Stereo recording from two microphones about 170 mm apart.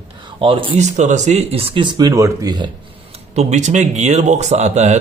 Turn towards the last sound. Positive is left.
turn(degrees=-40)  # may be behind; listen again after turning